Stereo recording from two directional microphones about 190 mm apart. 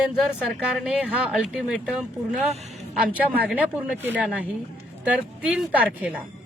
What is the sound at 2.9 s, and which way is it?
A man's voice, 5° right (ahead or behind).